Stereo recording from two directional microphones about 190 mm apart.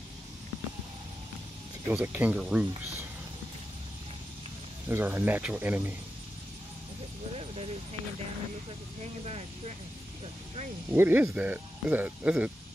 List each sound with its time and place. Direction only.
1.9 s speech: 10° right (ahead or behind)
4.8 s speech: 10° right (ahead or behind)
7.3 s a sound: 30° right (ahead or behind)
10.9 s speech: 10° right (ahead or behind)